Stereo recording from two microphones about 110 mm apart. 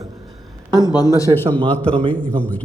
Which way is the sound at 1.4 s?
15° left (ahead or behind).